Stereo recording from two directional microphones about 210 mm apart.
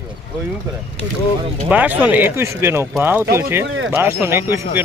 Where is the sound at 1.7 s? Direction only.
5° right (ahead or behind).